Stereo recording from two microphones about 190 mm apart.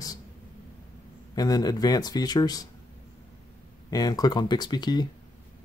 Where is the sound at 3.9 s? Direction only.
20° left (ahead or behind).